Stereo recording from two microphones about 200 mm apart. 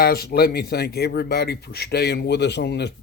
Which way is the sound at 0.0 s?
50° left (ahead or behind).